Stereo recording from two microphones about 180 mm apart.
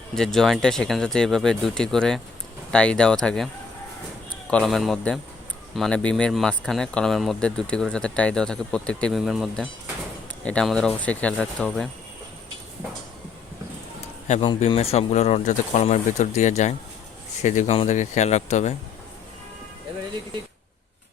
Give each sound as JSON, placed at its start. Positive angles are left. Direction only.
{"t": 0.2, "sound": "a man's voice", "side_deg": 0}
{"t": 14.4, "sound": "speech", "side_deg": 25}